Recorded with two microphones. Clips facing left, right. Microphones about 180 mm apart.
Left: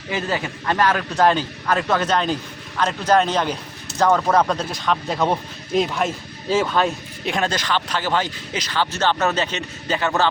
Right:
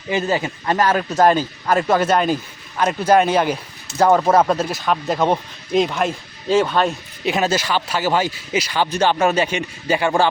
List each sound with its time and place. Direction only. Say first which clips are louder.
0.1 s speech: right 4 dB; 25° right (ahead or behind)
1.7 s speech: right 4 dB; 10° right (ahead or behind)